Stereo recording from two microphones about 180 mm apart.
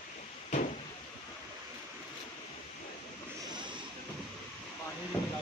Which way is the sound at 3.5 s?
25° right (ahead or behind).